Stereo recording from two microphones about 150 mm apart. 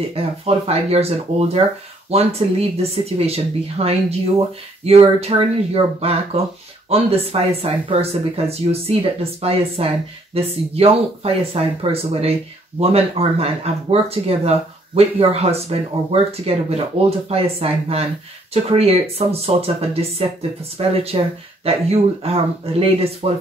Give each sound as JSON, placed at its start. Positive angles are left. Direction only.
{"t": 0.1, "sound": "speech", "side_deg": -40}